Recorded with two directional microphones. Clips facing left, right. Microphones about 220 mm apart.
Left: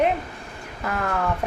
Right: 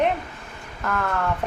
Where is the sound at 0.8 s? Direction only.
10° left (ahead or behind).